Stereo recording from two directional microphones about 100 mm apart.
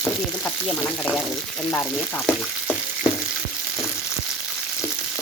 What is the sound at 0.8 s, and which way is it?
Speech, 15° left (ahead or behind).